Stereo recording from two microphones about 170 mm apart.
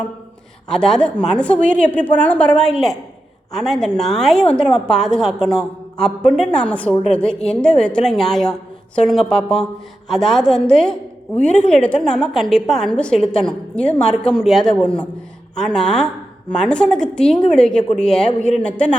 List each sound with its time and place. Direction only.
0.7 s a woman's voice: 5° left (ahead or behind)